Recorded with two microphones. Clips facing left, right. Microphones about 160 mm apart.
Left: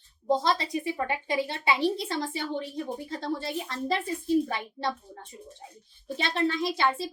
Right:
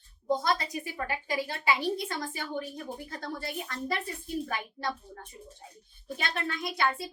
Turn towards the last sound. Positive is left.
turn(degrees=25)  # may be behind; listen again after turning